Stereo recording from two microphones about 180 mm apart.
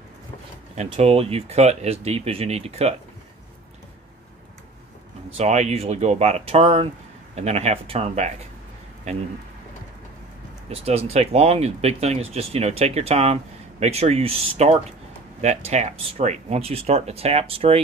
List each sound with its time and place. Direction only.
0.7 s speech: 35° right (ahead or behind)
5.4 s speech: 40° right (ahead or behind)
10.7 s speech: 35° right (ahead or behind)